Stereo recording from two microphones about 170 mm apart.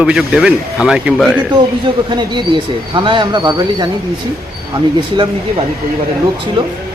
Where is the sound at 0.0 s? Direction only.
5° right (ahead or behind).